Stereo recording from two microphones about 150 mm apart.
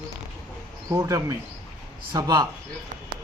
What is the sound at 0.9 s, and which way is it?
Speech, 20° right (ahead or behind).